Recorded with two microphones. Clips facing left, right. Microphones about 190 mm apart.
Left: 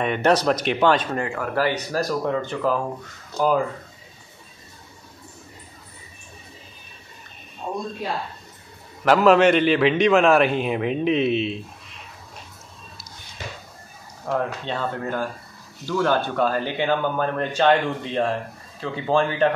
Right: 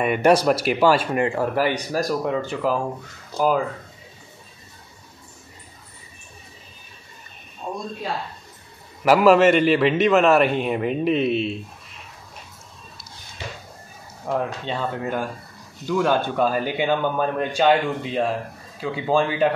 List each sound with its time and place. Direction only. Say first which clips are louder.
0.0 s speech: right 2 dB; 10° right (ahead or behind)
1.2 s a man's voice: right 6 dB; 30° right (ahead or behind)
1.5 s a man's voice: right 1 dB; 15° right (ahead or behind)
9.0 s a man's voice: right 1 dB; 5° right (ahead or behind)
14.2 s speech: even; 10° right (ahead or behind)